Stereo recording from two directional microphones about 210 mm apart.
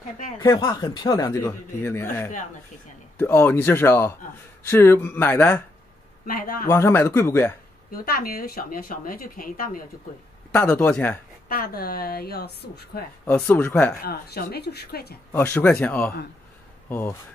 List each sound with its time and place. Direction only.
0.4 s speech: 20° left (ahead or behind)
6.2 s speech: 45° left (ahead or behind)
6.7 s speech: 10° left (ahead or behind)
7.9 s speech: 45° left (ahead or behind)
10.5 s speech: 10° left (ahead or behind)
11.4 s speech: 45° left (ahead or behind)
13.2 s speech: 10° left (ahead or behind)
14.0 s speech: 50° left (ahead or behind)
15.3 s speech: 10° left (ahead or behind)